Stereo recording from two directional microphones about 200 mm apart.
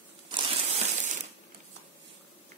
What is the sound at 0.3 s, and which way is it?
Crushing, 25° right (ahead or behind).